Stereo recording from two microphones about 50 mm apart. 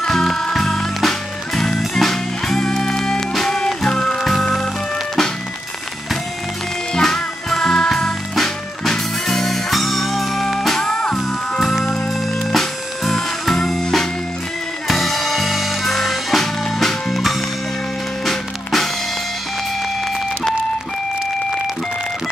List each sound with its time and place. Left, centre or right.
0.0 s music: centre
6.9 s music: centre
10.8 s music: centre
11.7 s music: centre
14.9 s music: centre